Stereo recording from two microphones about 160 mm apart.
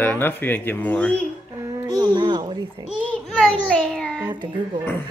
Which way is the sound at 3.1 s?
5° left (ahead or behind).